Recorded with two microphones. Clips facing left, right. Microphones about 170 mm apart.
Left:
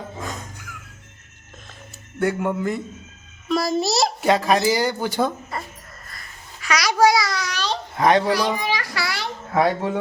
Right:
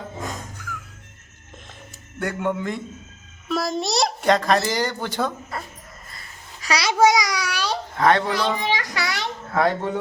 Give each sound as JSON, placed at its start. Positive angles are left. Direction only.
{"t": 2.1, "sound": "a child's voice", "side_deg": 5}
{"t": 6.6, "sound": "a child's voice", "side_deg": -30}
{"t": 7.9, "sound": "a child's voice", "side_deg": 15}
{"t": 8.6, "sound": "a sound", "side_deg": -20}
{"t": 9.5, "sound": "a child's voice", "side_deg": 15}